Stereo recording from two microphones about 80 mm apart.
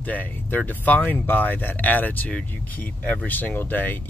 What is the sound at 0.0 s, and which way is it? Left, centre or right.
Speech, left.